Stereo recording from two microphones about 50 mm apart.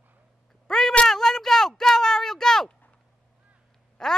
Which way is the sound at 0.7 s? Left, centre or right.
Centre.